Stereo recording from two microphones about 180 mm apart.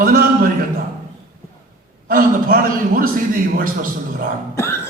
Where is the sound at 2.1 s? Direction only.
50° right (ahead or behind).